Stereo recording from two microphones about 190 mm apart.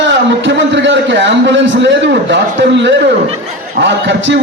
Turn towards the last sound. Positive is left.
turn(degrees=-70)  # may be behind; listen again after turning